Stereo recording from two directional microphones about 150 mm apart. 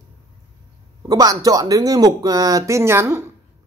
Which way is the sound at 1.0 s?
25° right (ahead or behind).